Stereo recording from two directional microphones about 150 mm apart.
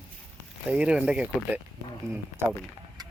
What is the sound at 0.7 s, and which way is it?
Speech, 10° right (ahead or behind).